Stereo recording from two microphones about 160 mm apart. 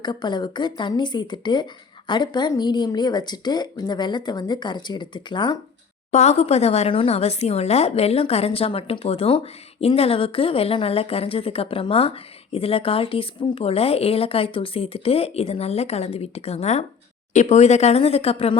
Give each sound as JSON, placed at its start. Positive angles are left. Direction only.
{"t": 0.0, "sound": "speech", "side_deg": 25}
{"t": 6.1, "sound": "speech", "side_deg": 45}